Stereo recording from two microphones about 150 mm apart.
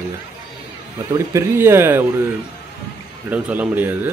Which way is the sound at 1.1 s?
20° right (ahead or behind).